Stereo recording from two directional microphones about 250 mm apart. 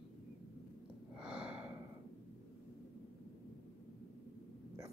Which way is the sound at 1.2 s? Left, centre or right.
Centre.